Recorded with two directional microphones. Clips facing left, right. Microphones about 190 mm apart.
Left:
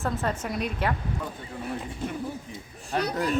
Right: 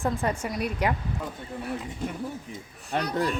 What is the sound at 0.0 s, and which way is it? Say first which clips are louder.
Speech: right 1 dB; 10° right (ahead or behind).